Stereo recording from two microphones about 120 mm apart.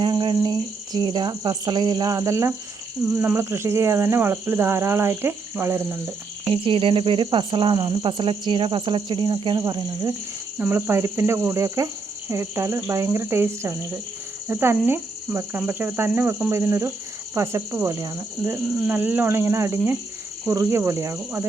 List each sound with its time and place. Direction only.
0.0 s a sound: 40° right (ahead or behind)
0.9 s speech: 35° right (ahead or behind); by 6.0 s 20° right (ahead or behind)
6.5 s speech: 50° right (ahead or behind); by 10.2 s 30° right (ahead or behind)
10.6 s speech: 20° right (ahead or behind)